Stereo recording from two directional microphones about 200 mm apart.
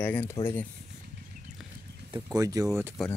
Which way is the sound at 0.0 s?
10° left (ahead or behind).